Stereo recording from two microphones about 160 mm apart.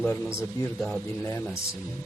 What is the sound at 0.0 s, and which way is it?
Speech, 15° left (ahead or behind).